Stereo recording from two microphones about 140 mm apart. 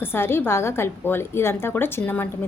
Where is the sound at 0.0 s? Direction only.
15° left (ahead or behind).